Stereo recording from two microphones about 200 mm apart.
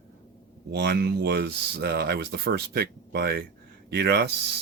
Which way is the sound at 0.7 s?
55° right (ahead or behind).